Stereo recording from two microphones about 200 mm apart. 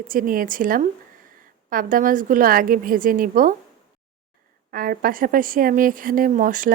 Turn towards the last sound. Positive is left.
turn(degrees=-40)  # may be behind; listen again after turning